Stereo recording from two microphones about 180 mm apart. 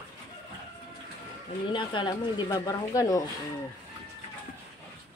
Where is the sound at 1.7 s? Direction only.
25° left (ahead or behind).